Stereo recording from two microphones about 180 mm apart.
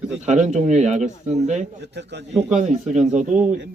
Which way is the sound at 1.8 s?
70° right (ahead or behind).